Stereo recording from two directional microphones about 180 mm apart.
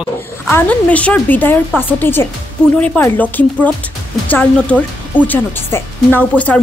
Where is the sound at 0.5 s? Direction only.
10° left (ahead or behind).